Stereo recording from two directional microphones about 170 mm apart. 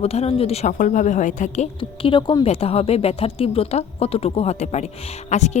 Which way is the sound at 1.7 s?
30° left (ahead or behind).